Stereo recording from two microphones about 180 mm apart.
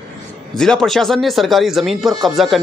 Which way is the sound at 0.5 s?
5° left (ahead or behind).